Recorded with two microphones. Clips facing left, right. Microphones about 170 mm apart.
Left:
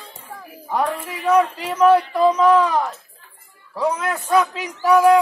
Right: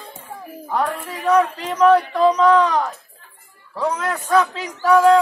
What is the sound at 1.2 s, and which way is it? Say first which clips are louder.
A man's voice: even; 10° left (ahead or behind).